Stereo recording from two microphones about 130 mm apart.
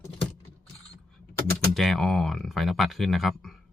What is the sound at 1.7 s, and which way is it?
Speech, centre (ahead or behind).